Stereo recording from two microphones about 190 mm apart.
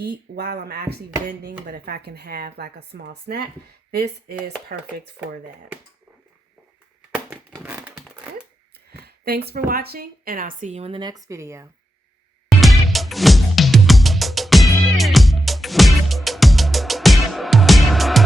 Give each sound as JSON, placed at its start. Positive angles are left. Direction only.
{"t": 0.0, "sound": "speech", "side_deg": -55}
{"t": 7.5, "sound": "a sound", "side_deg": -10}
{"t": 8.9, "sound": "speech", "side_deg": -55}
{"t": 12.5, "sound": "music", "side_deg": 0}